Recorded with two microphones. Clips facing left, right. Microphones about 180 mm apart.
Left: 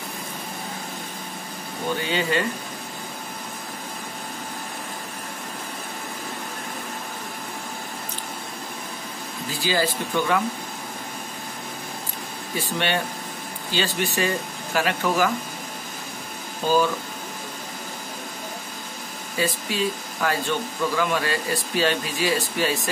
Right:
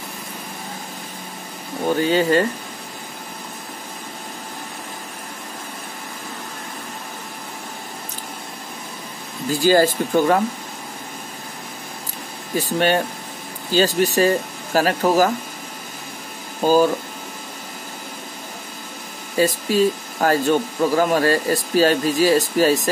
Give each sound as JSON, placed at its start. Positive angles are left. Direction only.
{"t": 1.9, "sound": "speech", "side_deg": -40}
{"t": 9.5, "sound": "speech", "side_deg": -45}
{"t": 12.5, "sound": "speech", "side_deg": -40}
{"t": 16.6, "sound": "speech", "side_deg": -40}
{"t": 19.3, "sound": "speech", "side_deg": -40}